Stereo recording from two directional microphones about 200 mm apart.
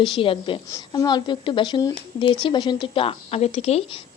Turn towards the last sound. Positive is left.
turn(degrees=30)  # may be behind; listen again after turning